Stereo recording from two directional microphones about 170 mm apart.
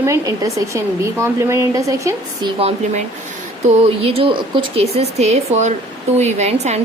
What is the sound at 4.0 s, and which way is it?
A woman's voice, 35° right (ahead or behind).